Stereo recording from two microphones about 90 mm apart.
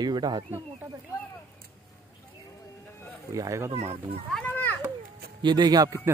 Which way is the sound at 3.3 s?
35° right (ahead or behind).